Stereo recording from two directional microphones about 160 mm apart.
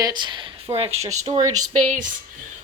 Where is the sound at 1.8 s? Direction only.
50° right (ahead or behind).